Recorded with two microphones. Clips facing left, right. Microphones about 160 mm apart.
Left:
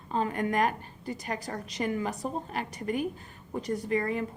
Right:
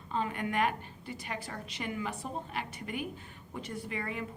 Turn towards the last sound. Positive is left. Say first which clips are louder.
# left 8 dB
turn(degrees=40)  # may be behind; listen again after turning